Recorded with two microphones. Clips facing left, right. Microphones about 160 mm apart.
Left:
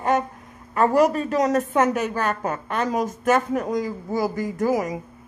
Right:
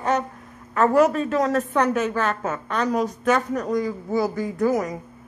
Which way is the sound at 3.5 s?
20° left (ahead or behind).